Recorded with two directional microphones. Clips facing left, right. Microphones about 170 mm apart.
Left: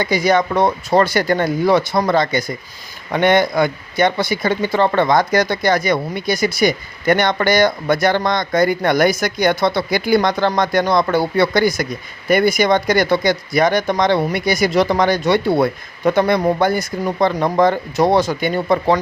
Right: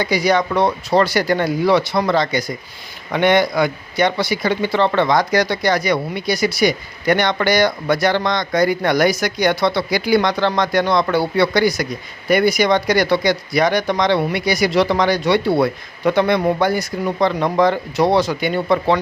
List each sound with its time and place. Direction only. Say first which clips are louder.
0.0 s speech: left 1 dB; 50° left (ahead or behind)